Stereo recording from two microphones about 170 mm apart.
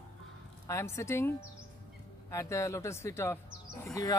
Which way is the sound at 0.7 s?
15° left (ahead or behind).